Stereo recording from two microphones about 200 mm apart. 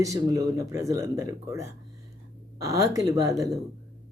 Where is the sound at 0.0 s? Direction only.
15° right (ahead or behind).